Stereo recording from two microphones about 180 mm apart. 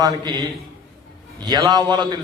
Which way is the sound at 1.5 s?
20° right (ahead or behind).